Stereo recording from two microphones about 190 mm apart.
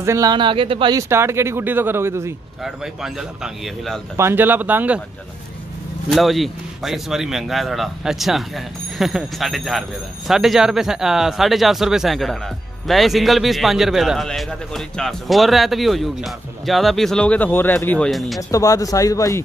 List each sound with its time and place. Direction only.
0.0 s speech: 15° right (ahead or behind)
2.6 s a man's voice: centre (ahead or behind)
4.2 s speech: 10° right (ahead or behind)
6.0 s a man's voice: centre (ahead or behind)
18.5 s speech: 20° left (ahead or behind)